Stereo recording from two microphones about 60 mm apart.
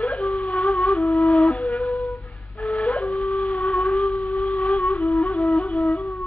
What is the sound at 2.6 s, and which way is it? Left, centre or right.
Wind instrument, centre.